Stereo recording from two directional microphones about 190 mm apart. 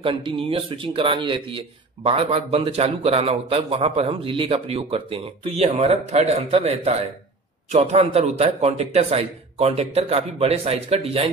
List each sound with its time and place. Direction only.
0.0 s a man's voice: 25° right (ahead or behind)